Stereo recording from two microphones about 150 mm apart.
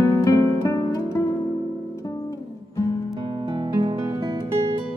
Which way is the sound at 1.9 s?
20° left (ahead or behind).